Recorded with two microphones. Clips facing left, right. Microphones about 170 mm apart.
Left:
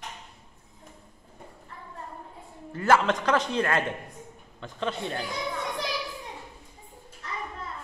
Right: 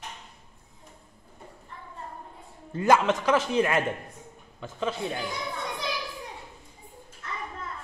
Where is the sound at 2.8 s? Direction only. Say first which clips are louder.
Right 1 dB; 15° right (ahead or behind).